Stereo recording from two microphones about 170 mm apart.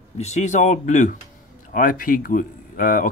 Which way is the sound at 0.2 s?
40° left (ahead or behind).